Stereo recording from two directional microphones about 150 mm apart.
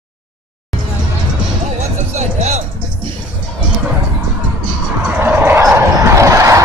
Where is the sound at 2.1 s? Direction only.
50° right (ahead or behind).